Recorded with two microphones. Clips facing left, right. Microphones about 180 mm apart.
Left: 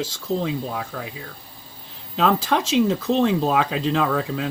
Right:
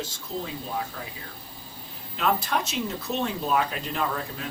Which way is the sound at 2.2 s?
90° left.